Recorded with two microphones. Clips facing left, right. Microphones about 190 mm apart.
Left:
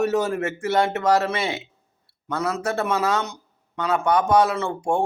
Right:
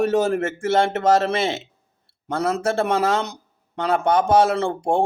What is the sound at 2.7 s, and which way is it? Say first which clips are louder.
Speech: right 3 dB; 30° right (ahead or behind).